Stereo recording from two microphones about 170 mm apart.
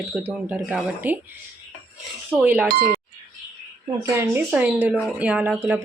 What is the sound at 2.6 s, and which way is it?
Speech, 60° right (ahead or behind).